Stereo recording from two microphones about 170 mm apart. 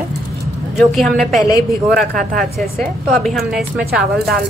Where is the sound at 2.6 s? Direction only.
Centre (ahead or behind).